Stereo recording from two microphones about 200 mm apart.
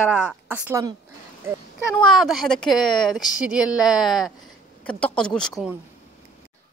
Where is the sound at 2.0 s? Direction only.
Centre (ahead or behind).